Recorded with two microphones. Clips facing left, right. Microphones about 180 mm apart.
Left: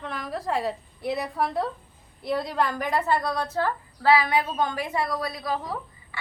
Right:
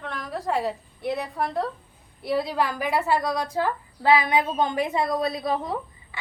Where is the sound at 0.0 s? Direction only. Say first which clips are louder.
Right 1 dB; centre (ahead or behind).